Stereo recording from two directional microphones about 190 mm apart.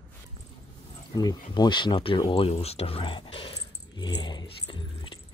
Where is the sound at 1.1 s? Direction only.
20° left (ahead or behind).